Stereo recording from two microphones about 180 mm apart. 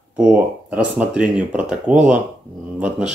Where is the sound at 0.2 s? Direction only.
5° right (ahead or behind).